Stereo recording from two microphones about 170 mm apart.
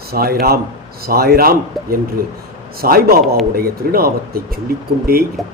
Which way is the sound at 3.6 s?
60° right (ahead or behind).